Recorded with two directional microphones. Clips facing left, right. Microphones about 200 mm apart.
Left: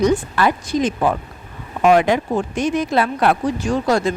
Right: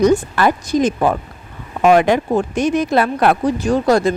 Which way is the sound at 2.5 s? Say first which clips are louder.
Right 2 dB; 65° right (ahead or behind).